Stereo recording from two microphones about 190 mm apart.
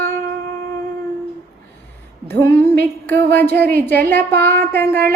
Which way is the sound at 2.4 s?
15° left (ahead or behind).